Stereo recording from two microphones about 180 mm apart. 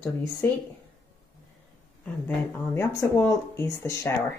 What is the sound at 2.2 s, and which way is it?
Speech, 10° left (ahead or behind).